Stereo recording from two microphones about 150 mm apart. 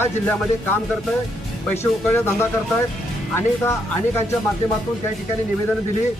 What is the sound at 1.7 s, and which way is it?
Speech, 15° left (ahead or behind).